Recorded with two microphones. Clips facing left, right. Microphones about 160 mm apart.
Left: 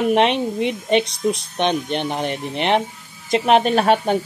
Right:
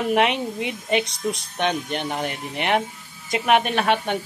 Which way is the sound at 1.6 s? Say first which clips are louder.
Left 1 dB; 20° left (ahead or behind).